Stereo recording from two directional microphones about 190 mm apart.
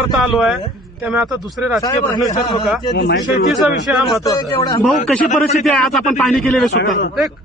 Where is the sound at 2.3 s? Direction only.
30° left (ahead or behind).